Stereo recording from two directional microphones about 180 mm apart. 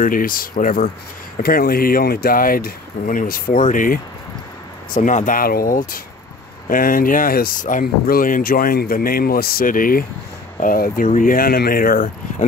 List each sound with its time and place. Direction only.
0.0 s speech: 50° left (ahead or behind)